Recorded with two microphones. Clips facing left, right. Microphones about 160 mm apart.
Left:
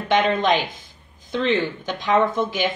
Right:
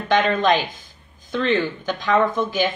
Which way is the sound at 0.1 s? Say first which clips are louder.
Right 1 dB; 20° left (ahead or behind).